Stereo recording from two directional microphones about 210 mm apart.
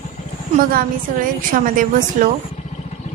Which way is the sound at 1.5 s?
40° right (ahead or behind).